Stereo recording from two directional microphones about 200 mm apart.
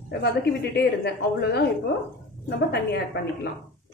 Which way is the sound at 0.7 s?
55° left (ahead or behind).